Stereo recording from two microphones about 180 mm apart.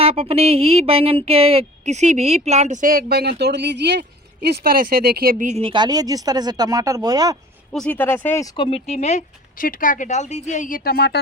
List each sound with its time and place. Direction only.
0.0 s speech: 35° right (ahead or behind)
7.7 s speech: 5° left (ahead or behind)
8.6 s speech: 35° left (ahead or behind); by 11.2 s 60° left (ahead or behind)